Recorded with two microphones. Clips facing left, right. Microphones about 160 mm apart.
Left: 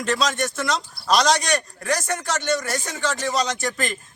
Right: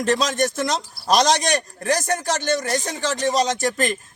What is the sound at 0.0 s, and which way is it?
A man's voice, 40° right (ahead or behind).